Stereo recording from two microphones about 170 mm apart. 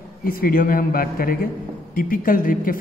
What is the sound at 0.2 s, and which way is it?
A man's voice, 55° left (ahead or behind).